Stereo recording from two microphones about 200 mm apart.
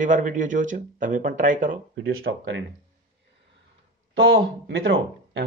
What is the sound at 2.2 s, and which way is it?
Speech, 65° right (ahead or behind).